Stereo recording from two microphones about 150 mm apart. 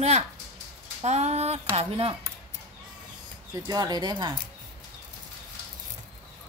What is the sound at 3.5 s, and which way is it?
Speech, 25° right (ahead or behind).